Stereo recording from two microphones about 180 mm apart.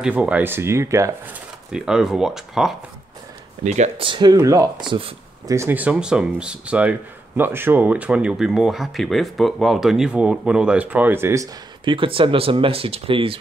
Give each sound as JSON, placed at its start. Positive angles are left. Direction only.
{"t": 0.0, "sound": "speech", "side_deg": -10}
{"t": 1.7, "sound": "speech", "side_deg": -5}
{"t": 3.6, "sound": "speech", "side_deg": -40}
{"t": 4.0, "sound": "speech", "side_deg": -25}
{"t": 5.5, "sound": "speech", "side_deg": -15}
{"t": 11.8, "sound": "speech", "side_deg": -30}